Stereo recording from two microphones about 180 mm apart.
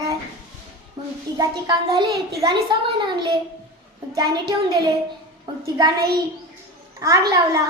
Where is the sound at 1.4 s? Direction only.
25° right (ahead or behind).